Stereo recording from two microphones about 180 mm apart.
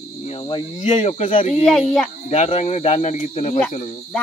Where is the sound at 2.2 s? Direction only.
35° left (ahead or behind).